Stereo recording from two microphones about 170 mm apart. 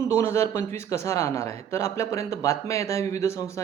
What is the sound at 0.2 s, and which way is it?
A man's voice, 15° left (ahead or behind).